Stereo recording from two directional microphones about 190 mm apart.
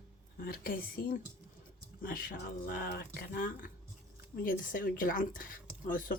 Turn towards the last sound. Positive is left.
turn(degrees=45)  # may be behind; listen again after turning